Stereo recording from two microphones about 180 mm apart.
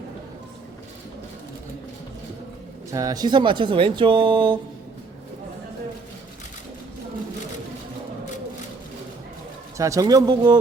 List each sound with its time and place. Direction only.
2.9 s speech: 20° right (ahead or behind)
9.7 s speech: 20° right (ahead or behind)